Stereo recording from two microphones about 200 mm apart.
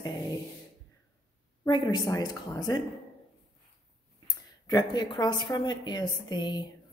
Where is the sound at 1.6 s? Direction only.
25° left (ahead or behind).